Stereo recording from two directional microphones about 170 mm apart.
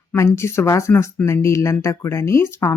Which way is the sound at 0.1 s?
15° left (ahead or behind).